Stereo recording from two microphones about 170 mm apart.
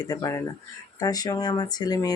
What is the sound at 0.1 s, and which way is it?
Speech, 20° left (ahead or behind).